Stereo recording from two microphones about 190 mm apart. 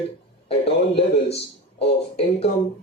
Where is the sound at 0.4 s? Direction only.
30° left (ahead or behind).